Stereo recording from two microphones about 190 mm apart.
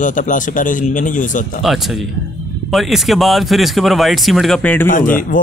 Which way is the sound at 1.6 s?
Centre (ahead or behind).